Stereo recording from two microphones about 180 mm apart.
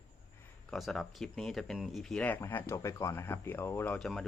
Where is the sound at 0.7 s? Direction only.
Centre (ahead or behind).